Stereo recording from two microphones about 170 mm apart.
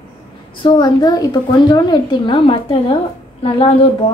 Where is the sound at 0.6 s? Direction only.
25° left (ahead or behind).